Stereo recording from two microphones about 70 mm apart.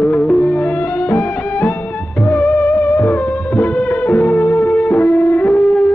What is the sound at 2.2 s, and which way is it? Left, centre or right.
Music, centre.